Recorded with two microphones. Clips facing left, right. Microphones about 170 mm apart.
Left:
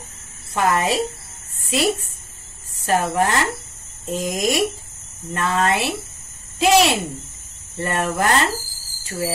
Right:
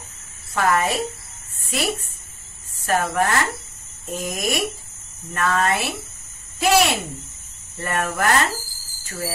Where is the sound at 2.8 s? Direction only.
15° left (ahead or behind).